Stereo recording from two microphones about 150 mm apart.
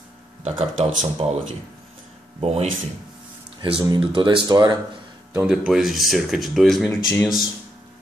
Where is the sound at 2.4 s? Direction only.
40° right (ahead or behind).